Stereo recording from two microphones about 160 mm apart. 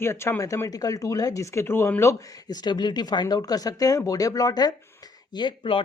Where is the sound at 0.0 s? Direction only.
15° left (ahead or behind).